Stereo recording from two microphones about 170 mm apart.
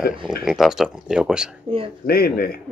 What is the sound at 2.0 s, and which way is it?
Speech, 65° left (ahead or behind).